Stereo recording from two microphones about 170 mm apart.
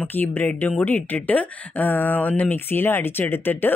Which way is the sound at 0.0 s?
10° left (ahead or behind).